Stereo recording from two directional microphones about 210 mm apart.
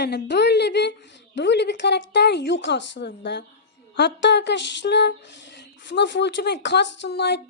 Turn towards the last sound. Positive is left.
turn(degrees=50)  # may be behind; listen again after turning